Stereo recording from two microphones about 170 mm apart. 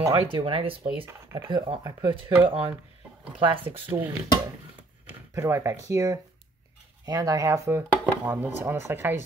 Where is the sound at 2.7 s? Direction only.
5° right (ahead or behind).